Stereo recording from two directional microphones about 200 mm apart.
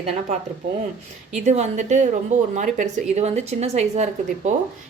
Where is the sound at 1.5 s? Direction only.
35° right (ahead or behind).